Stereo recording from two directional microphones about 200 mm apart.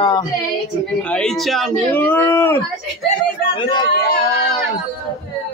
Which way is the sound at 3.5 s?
20° left (ahead or behind).